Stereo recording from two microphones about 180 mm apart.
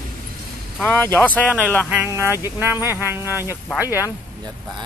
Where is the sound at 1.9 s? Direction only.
10° right (ahead or behind).